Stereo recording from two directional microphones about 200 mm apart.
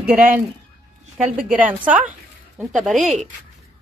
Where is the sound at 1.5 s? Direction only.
5° right (ahead or behind).